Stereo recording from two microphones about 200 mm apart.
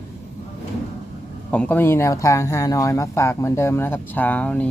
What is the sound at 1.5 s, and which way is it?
Speech, 5° left (ahead or behind).